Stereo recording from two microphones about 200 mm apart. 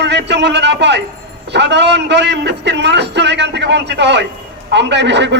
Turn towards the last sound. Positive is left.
turn(degrees=-60)  # may be behind; listen again after turning